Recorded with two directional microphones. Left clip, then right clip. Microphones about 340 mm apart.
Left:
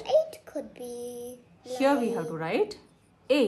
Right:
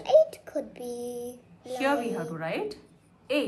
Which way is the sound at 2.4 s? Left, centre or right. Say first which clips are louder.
Left 7 dB; centre.